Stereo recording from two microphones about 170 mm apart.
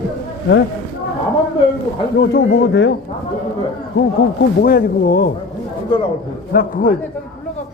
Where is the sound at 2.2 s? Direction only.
90° left.